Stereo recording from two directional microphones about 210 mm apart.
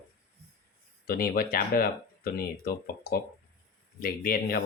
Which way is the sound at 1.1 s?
45° left (ahead or behind).